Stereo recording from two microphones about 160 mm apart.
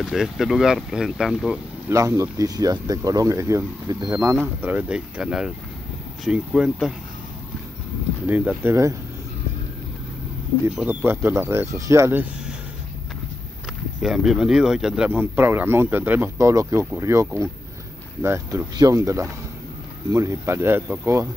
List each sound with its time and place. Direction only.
0.0 s speech: 5° right (ahead or behind)
1.9 s speech: 20° right (ahead or behind)
8.3 s speech: 10° right (ahead or behind)
10.8 s speech: 10° right (ahead or behind)
14.0 s speech: centre (ahead or behind)